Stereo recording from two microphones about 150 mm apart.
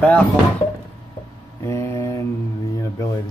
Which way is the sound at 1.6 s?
15° left (ahead or behind).